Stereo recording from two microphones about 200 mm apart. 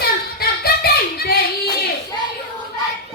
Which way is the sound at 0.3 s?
50° left (ahead or behind).